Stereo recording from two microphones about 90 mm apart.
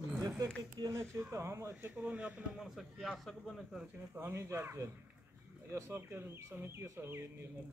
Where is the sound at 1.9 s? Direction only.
15° right (ahead or behind).